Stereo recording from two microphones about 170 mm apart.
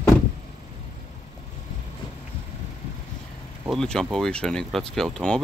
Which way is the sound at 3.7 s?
5° left (ahead or behind).